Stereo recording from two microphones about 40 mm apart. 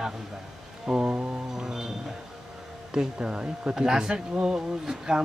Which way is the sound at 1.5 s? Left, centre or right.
Centre.